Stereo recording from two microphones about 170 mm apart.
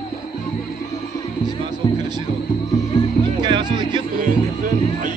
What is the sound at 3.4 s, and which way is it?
Music, 25° right (ahead or behind).